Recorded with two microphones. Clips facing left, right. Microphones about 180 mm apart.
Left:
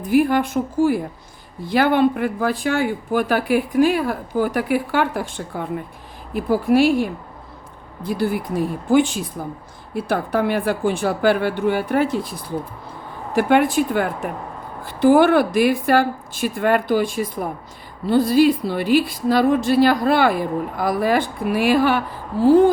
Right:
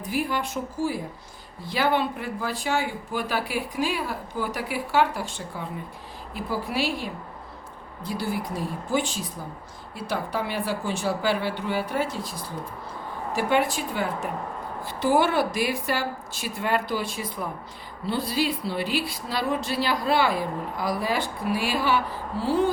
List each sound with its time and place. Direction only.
0.1 s a woman's voice: 55° left (ahead or behind)
13.3 s a woman's voice: 55° left (ahead or behind)